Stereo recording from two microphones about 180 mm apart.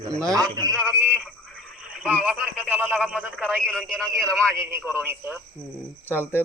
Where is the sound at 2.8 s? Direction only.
5° left (ahead or behind).